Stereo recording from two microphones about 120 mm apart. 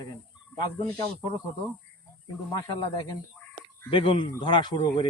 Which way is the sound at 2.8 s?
35° left (ahead or behind).